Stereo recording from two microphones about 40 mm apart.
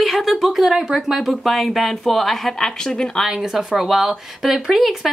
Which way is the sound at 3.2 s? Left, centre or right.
Centre.